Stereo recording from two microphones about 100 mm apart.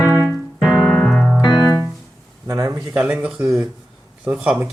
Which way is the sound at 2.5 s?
35° right (ahead or behind).